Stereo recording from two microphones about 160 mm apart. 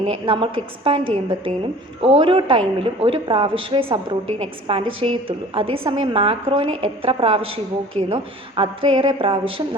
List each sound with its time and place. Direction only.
0.0 s a woman's voice: 30° right (ahead or behind)